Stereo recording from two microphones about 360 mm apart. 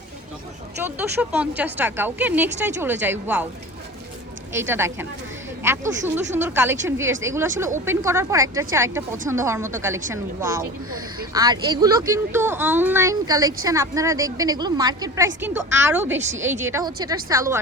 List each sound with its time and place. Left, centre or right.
0.8 s a woman's voice: centre
4.5 s speech: centre
11.2 s a woman's voice: centre